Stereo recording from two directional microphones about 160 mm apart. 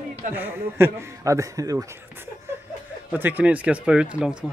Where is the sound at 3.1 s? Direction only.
10° right (ahead or behind).